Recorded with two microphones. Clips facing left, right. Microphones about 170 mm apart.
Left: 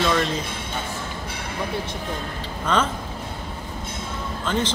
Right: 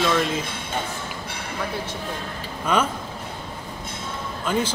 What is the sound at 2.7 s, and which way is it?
Speech, 10° right (ahead or behind).